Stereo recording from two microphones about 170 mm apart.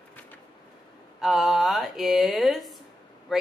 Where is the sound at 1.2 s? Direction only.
Centre (ahead or behind).